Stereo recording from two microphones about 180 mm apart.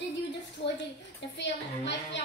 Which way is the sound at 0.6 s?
70° left (ahead or behind).